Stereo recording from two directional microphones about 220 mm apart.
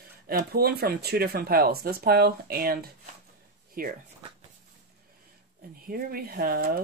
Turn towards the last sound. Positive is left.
turn(degrees=-45)  # may be behind; listen again after turning